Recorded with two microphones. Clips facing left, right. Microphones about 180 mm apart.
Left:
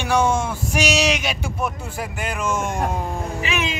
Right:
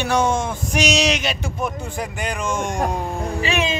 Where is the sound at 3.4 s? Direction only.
30° right (ahead or behind).